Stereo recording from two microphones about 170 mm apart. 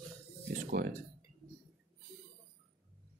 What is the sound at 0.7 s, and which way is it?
Speech, 65° right (ahead or behind).